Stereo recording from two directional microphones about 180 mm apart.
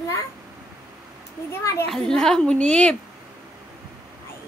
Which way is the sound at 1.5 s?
15° left (ahead or behind).